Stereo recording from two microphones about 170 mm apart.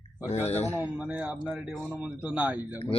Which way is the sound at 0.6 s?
10° right (ahead or behind).